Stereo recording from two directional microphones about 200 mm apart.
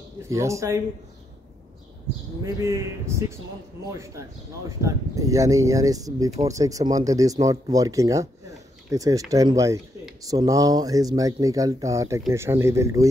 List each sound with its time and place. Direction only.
0.3 s speech: 15° right (ahead or behind)
2.4 s speech: 15° right (ahead or behind)